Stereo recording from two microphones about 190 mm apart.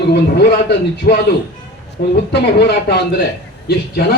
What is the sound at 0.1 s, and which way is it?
A man's voice, 60° left (ahead or behind).